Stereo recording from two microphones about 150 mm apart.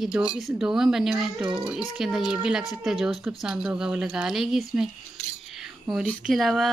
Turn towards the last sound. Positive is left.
turn(degrees=0)  # may be behind; listen again after turning